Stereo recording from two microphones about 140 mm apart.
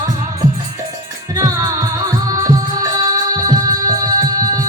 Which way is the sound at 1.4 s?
25° right (ahead or behind).